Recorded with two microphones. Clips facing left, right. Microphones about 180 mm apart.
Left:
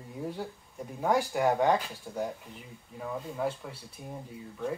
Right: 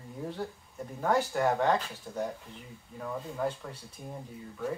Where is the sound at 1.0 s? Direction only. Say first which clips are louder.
Left 1 dB; 10° left (ahead or behind).